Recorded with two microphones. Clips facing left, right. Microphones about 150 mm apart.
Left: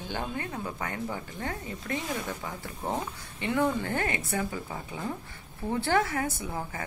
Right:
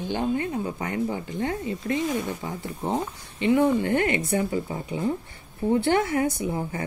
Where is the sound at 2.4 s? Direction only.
20° right (ahead or behind).